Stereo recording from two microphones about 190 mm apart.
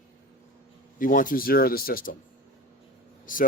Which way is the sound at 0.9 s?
45° left (ahead or behind).